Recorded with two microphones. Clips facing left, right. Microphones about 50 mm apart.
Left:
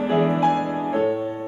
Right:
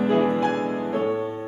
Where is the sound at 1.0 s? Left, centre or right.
Centre.